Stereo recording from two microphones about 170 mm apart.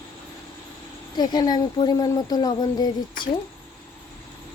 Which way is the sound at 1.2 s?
25° left (ahead or behind).